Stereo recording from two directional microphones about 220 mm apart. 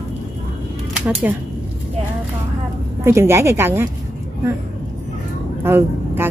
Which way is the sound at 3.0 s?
10° right (ahead or behind).